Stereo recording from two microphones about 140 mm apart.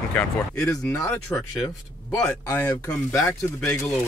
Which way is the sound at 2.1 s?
15° left (ahead or behind).